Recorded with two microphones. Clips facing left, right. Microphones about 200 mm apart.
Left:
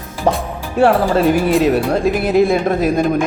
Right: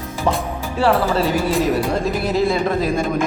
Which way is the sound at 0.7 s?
55° left (ahead or behind).